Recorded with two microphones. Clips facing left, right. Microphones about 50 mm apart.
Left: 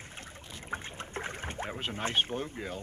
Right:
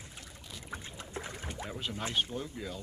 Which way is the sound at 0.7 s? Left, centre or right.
Left.